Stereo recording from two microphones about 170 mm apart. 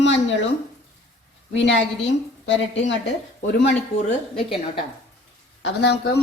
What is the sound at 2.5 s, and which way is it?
Speech, 90° left.